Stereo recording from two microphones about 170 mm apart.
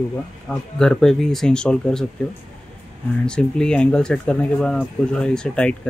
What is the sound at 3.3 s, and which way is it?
Speech, 5° left (ahead or behind).